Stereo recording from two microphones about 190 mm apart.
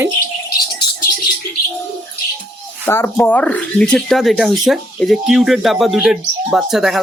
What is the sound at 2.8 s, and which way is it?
Speech, 10° left (ahead or behind).